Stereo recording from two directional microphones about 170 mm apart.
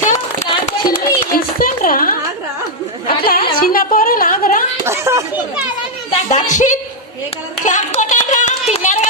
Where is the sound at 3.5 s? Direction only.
60° left (ahead or behind).